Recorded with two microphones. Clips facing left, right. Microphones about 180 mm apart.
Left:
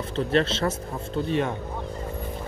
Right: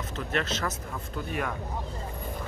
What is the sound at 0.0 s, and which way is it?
Speech, 30° left (ahead or behind).